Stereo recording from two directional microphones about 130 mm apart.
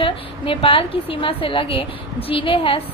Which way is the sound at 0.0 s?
45° left (ahead or behind).